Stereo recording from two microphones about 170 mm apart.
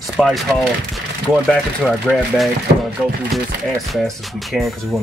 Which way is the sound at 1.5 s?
5° left (ahead or behind).